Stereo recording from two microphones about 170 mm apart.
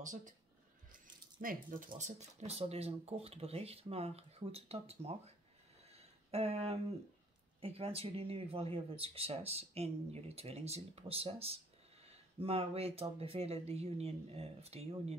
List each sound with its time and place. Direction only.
0.0 s speech: 50° right (ahead or behind)
1.4 s speech: 55° right (ahead or behind)
2.0 s speech: 45° right (ahead or behind)
5.9 s a sound: 35° right (ahead or behind)
7.6 s speech: 35° right (ahead or behind)